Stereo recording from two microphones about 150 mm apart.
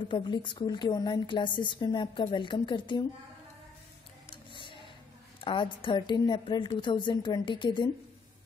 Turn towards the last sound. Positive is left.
turn(degrees=30)  # may be behind; listen again after turning